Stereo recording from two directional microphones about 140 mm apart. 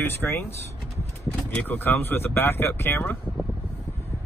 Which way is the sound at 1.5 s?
15° left (ahead or behind).